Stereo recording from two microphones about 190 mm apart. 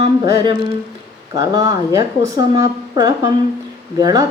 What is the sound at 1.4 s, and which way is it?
Speech, 20° right (ahead or behind).